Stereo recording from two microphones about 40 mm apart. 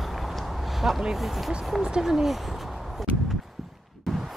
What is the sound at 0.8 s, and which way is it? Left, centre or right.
Speech, centre.